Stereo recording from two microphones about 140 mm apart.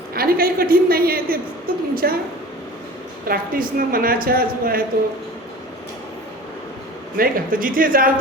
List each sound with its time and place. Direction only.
0.1 s a woman's voice: 90° right
3.2 s a woman's voice: 90° right
7.2 s a woman's voice: 90° right